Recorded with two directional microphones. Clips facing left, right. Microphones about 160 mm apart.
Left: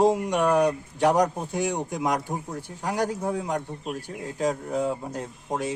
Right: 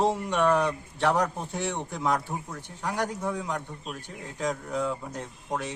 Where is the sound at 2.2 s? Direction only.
40° left (ahead or behind).